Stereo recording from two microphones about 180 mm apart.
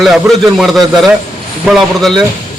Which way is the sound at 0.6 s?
Centre (ahead or behind).